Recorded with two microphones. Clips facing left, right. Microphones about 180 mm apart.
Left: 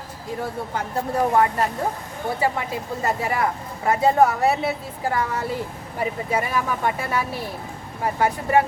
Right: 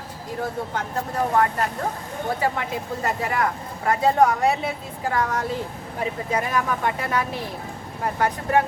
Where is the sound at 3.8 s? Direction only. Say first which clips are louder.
Left 1 dB; 5° left (ahead or behind).